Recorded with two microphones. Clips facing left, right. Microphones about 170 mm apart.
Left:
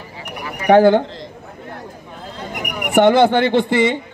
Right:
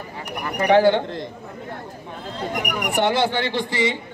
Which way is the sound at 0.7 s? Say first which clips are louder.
Left 5 dB; 50° left (ahead or behind).